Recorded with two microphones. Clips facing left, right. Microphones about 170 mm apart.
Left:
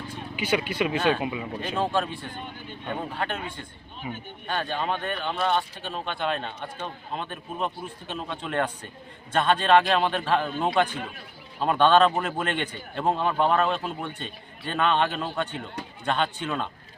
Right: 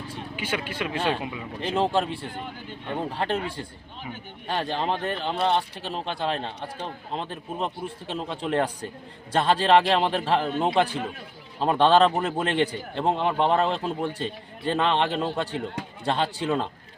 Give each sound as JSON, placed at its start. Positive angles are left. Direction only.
{"t": 0.3, "sound": "speech", "side_deg": 10}
{"t": 1.6, "sound": "speech", "side_deg": -25}
{"t": 3.2, "sound": "speech", "side_deg": -30}